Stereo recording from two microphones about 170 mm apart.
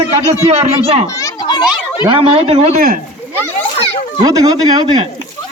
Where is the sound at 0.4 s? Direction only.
40° right (ahead or behind).